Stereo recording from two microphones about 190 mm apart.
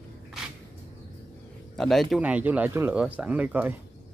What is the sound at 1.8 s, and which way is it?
Speech, centre (ahead or behind).